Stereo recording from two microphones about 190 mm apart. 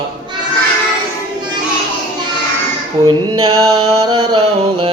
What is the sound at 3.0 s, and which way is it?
Female singing, 25° right (ahead or behind).